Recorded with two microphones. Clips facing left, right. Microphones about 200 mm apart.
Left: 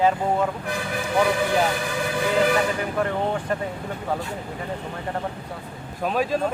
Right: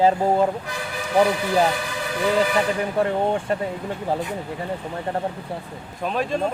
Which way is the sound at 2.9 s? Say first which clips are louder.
Right 4 dB; 30° right (ahead or behind).